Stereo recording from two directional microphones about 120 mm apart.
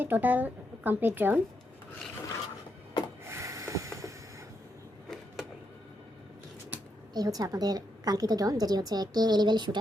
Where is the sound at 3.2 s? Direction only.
25° right (ahead or behind).